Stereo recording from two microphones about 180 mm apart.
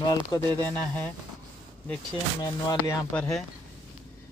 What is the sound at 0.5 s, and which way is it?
Speech, 10° left (ahead or behind).